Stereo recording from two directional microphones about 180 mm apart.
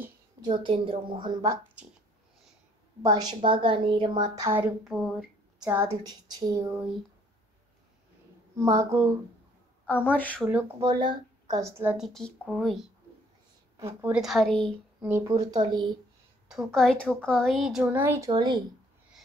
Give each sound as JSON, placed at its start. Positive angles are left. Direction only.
{"t": 0.4, "sound": "a woman's voice", "side_deg": -25}
{"t": 3.0, "sound": "a woman's voice", "side_deg": -20}
{"t": 4.5, "sound": "speech", "side_deg": -10}
{"t": 8.5, "sound": "speech", "side_deg": -15}
{"t": 9.8, "sound": "a woman's voice", "side_deg": 10}
{"t": 10.8, "sound": "speech", "side_deg": -25}
{"t": 12.1, "sound": "speech", "side_deg": 0}
{"t": 13.7, "sound": "a woman's voice", "side_deg": -15}
{"t": 14.1, "sound": "speech", "side_deg": 0}
{"t": 15.0, "sound": "a woman's voice", "side_deg": -15}
{"t": 16.4, "sound": "speech", "side_deg": 0}
{"t": 18.3, "sound": "a woman's voice", "side_deg": -25}